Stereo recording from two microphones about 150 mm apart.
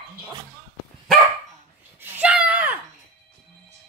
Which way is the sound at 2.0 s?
10° right (ahead or behind).